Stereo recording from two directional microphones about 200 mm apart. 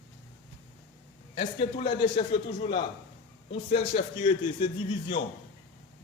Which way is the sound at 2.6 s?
40° left (ahead or behind).